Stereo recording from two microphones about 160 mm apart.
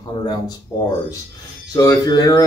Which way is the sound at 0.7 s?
20° left (ahead or behind).